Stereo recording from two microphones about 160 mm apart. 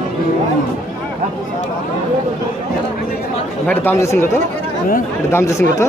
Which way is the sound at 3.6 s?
10° left (ahead or behind).